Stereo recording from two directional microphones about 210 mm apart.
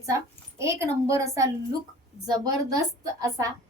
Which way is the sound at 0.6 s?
15° right (ahead or behind).